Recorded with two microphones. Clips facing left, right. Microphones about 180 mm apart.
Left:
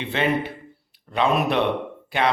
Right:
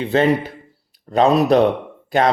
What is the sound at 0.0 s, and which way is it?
Speech, 40° right (ahead or behind).